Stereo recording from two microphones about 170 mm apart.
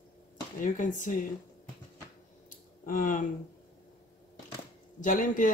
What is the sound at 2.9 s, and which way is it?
Speech, 50° left (ahead or behind).